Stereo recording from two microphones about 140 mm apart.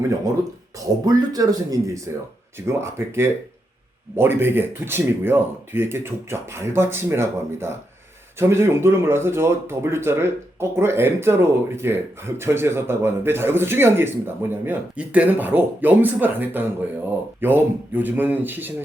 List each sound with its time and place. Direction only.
1.0 s a man's voice: 25° right (ahead or behind)